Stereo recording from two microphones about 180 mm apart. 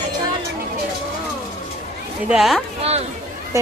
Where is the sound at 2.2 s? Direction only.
Centre (ahead or behind).